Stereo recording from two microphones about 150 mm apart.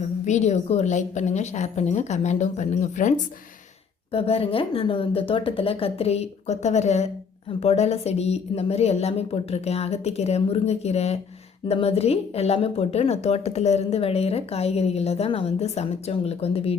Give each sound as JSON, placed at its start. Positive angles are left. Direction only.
{"t": 0.0, "sound": "a woman's voice", "side_deg": 50}
{"t": 4.1, "sound": "a woman's voice", "side_deg": 40}